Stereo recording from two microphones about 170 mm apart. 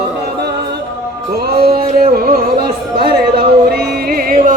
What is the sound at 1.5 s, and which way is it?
Music, 65° right (ahead or behind).